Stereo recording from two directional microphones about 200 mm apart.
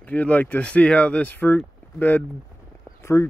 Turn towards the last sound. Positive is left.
turn(degrees=15)  # may be behind; listen again after turning